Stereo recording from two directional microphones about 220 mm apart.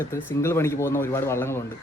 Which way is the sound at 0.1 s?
10° left (ahead or behind).